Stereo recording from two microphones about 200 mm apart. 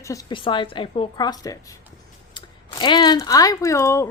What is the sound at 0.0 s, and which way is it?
A woman's voice, 15° left (ahead or behind).